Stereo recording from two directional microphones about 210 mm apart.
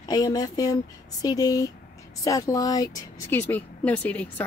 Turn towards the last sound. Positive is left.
turn(degrees=10)  # may be behind; listen again after turning